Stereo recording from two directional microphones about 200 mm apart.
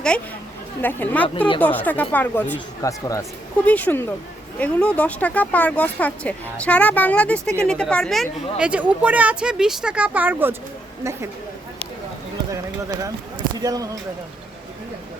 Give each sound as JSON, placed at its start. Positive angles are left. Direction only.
{"t": 0.8, "sound": "speech", "side_deg": 10}
{"t": 13.6, "sound": "speech", "side_deg": -20}